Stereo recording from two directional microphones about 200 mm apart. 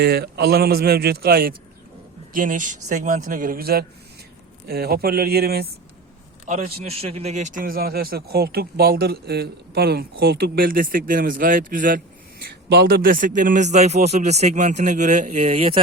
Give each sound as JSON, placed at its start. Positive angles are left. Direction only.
{"t": 0.0, "sound": "speech", "side_deg": -50}
{"t": 6.5, "sound": "a man's voice", "side_deg": -30}